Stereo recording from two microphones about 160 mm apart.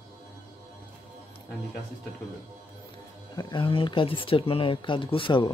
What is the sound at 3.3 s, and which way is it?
Speech, 25° left (ahead or behind).